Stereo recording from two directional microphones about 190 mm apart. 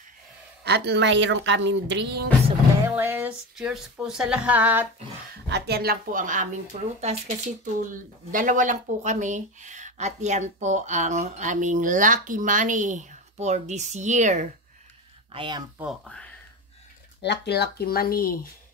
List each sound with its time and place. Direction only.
0.7 s a woman's voice: 60° right (ahead or behind)
2.8 s speech: 10° right (ahead or behind)
5.5 s speech: 55° right (ahead or behind); by 14.5 s 40° right (ahead or behind)
15.3 s speech: 25° right (ahead or behind)
15.8 s speech: centre (ahead or behind)
17.2 s speech: 60° left (ahead or behind)